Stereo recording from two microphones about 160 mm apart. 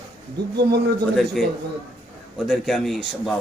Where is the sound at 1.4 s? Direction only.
5° left (ahead or behind).